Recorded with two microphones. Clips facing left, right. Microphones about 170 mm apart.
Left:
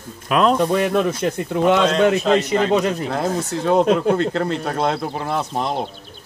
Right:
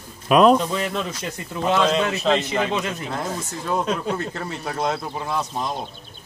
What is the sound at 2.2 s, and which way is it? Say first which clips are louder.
Speech: left 4 dB; centre (ahead or behind).